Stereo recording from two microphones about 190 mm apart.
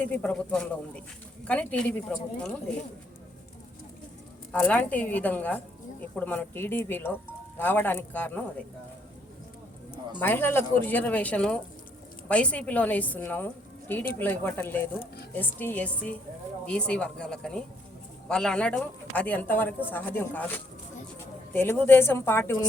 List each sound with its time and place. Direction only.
0.0 s a woman's voice: 10° left (ahead or behind)
4.5 s a woman's voice: 5° left (ahead or behind)
10.2 s a woman's voice: 10° left (ahead or behind)
14.9 s speech: 55° left (ahead or behind)
15.4 s a woman's voice: 10° left (ahead or behind)